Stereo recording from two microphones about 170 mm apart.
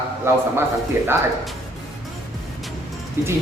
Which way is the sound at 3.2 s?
15° right (ahead or behind).